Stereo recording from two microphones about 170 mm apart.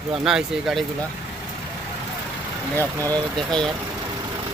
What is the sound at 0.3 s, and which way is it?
Speech, centre (ahead or behind).